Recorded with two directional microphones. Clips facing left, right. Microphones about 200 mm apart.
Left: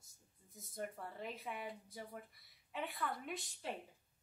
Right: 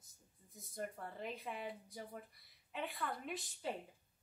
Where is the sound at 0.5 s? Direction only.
Centre (ahead or behind).